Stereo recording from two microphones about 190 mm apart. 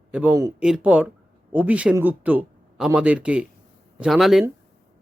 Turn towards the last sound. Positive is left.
turn(degrees=0)  # may be behind; listen again after turning